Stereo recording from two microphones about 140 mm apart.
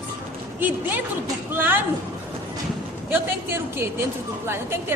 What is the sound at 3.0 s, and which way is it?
A woman's voice, 15° right (ahead or behind).